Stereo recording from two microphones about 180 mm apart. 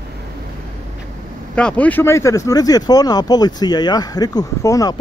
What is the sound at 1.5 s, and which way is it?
Speech, 5° left (ahead or behind).